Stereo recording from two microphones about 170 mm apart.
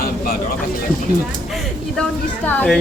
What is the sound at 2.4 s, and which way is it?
Speech, 10° left (ahead or behind).